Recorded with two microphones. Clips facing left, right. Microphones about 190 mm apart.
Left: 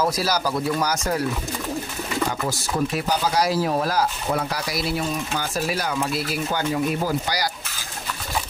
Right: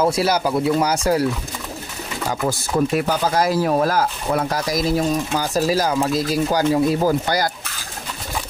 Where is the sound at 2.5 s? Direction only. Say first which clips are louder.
Right 5 dB; 50° right (ahead or behind).